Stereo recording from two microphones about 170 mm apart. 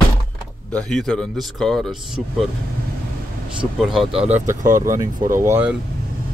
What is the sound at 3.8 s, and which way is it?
Speech, centre (ahead or behind).